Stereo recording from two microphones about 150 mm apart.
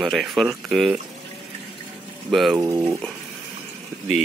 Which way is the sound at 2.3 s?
Centre (ahead or behind).